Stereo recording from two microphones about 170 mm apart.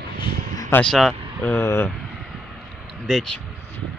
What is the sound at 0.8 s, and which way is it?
Speech, centre (ahead or behind).